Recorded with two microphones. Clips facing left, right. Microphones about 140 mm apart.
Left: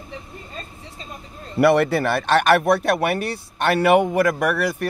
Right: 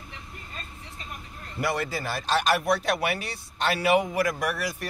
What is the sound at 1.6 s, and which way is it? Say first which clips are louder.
Speech: left 12 dB; 65° left (ahead or behind).